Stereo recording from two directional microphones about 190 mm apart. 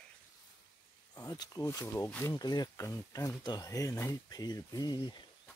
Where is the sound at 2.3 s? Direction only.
20° left (ahead or behind).